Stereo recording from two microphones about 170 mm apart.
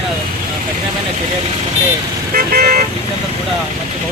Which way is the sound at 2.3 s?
60° right (ahead or behind).